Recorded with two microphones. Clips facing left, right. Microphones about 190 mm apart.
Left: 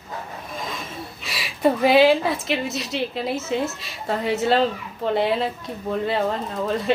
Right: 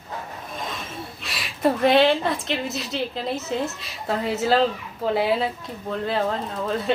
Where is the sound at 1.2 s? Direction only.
Centre (ahead or behind).